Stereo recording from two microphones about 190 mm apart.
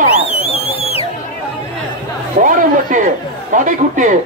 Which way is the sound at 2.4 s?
40° right (ahead or behind).